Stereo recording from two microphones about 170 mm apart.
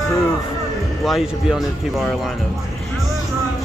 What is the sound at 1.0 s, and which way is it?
Speech, centre (ahead or behind).